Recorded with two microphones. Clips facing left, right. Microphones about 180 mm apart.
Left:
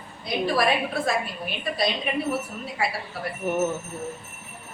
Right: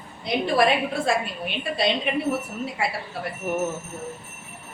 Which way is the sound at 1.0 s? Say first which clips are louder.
Right 2 dB; 25° right (ahead or behind).